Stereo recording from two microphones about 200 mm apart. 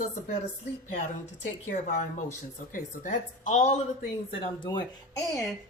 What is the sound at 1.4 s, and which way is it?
Speech, 35° left (ahead or behind).